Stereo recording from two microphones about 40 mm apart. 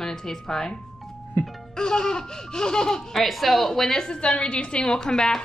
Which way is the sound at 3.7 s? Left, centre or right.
Centre.